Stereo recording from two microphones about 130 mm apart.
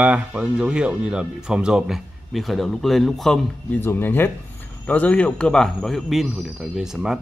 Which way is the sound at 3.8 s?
15° left (ahead or behind).